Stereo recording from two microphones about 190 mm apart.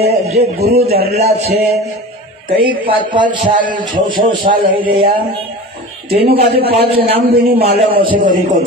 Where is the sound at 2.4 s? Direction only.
25° right (ahead or behind).